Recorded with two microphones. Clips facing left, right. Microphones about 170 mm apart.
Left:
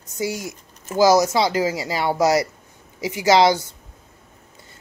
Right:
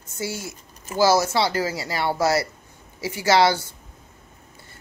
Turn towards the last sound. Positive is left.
turn(degrees=20)  # may be behind; listen again after turning